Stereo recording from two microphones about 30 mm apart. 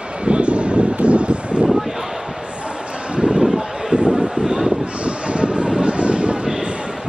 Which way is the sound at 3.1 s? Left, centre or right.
Right.